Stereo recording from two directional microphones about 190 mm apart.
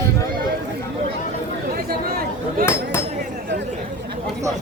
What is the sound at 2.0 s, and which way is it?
Chatter, 55° right (ahead or behind).